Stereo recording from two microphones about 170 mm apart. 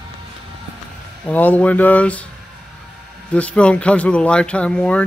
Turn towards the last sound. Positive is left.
turn(degrees=5)  # may be behind; listen again after turning